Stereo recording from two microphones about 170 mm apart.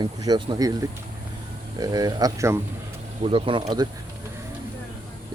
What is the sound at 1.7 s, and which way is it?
Speech, 20° right (ahead or behind).